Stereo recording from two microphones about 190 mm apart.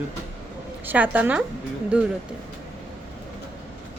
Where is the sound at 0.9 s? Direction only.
10° right (ahead or behind).